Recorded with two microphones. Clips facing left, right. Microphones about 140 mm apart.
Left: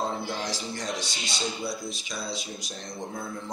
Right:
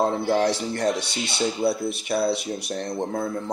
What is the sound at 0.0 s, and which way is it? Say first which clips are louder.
Speech: right 10 dB; 65° right (ahead or behind).